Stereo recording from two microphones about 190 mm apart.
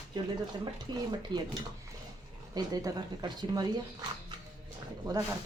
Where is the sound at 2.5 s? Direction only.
20° right (ahead or behind).